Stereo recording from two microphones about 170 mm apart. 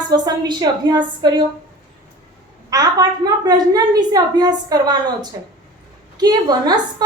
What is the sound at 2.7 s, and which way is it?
A woman's voice, 20° right (ahead or behind).